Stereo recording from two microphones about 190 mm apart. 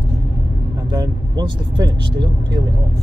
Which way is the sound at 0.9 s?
25° right (ahead or behind).